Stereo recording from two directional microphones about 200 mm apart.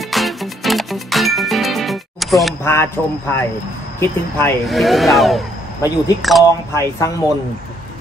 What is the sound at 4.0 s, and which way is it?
Speech, 10° left (ahead or behind).